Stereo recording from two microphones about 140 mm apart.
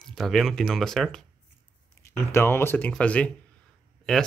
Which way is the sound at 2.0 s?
20° left (ahead or behind).